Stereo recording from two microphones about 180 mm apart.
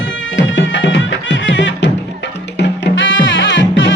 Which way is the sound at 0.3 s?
85° left.